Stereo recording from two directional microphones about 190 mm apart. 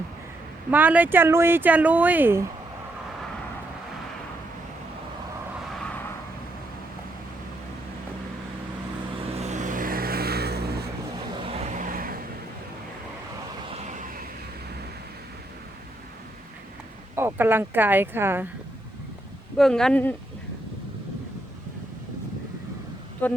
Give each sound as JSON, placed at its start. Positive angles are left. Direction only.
{"t": 0.7, "sound": "speech", "side_deg": -10}
{"t": 9.3, "sound": "vehicle", "side_deg": -35}
{"t": 11.3, "sound": "vehicle", "side_deg": -30}
{"t": 13.7, "sound": "a sound", "side_deg": -35}
{"t": 17.2, "sound": "speech", "side_deg": -10}
{"t": 19.5, "sound": "speech", "side_deg": 0}
{"t": 23.2, "sound": "speech", "side_deg": 10}